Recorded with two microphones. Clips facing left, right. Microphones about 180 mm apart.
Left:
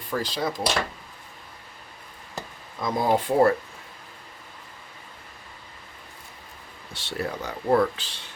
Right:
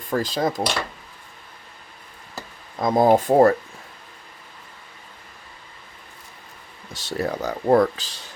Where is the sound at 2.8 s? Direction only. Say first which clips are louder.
Right 7 dB; 50° right (ahead or behind).